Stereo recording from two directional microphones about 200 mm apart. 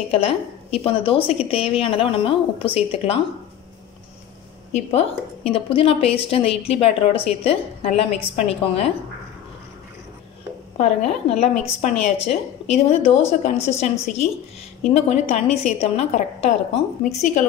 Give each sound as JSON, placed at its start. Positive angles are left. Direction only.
{"t": 0.1, "sound": "a woman's voice", "side_deg": 30}
{"t": 4.7, "sound": "a woman's voice", "side_deg": 30}
{"t": 10.8, "sound": "a woman's voice", "side_deg": 30}